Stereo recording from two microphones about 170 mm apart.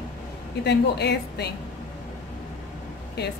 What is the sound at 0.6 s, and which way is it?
Speech, 80° left.